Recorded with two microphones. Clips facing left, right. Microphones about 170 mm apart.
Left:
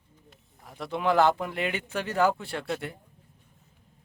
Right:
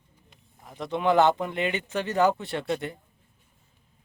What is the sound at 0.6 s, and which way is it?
Speech, centre (ahead or behind).